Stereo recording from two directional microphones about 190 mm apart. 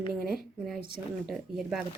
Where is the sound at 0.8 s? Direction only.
50° right (ahead or behind).